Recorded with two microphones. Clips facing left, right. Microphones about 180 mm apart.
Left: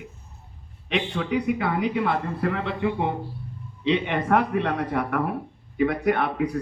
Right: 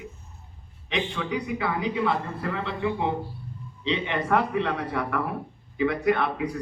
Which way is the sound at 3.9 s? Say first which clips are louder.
Left 3 dB; 55° left (ahead or behind).